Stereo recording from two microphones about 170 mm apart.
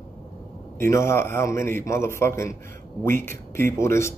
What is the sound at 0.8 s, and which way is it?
Speech, 15° left (ahead or behind).